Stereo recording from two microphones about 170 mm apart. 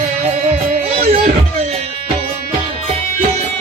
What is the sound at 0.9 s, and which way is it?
Music, 35° right (ahead or behind).